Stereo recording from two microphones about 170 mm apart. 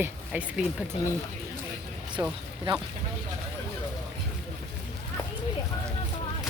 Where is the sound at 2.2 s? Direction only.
15° right (ahead or behind).